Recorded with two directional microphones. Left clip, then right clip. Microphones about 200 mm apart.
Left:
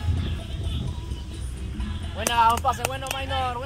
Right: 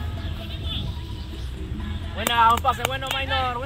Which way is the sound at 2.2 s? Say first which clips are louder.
Right 2 dB; 40° left (ahead or behind).